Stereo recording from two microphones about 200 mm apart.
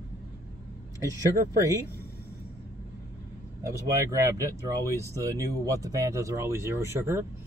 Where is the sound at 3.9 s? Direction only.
15° right (ahead or behind).